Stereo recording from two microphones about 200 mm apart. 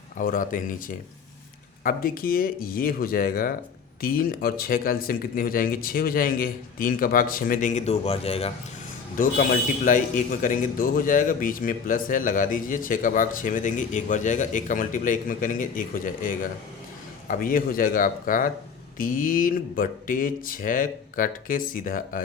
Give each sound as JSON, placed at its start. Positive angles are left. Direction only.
{"t": 0.2, "sound": "a man's voice", "side_deg": 40}
{"t": 9.1, "sound": "a man's voice", "side_deg": 40}